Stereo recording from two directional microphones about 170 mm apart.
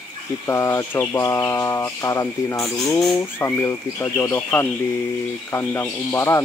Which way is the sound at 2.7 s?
Centre (ahead or behind).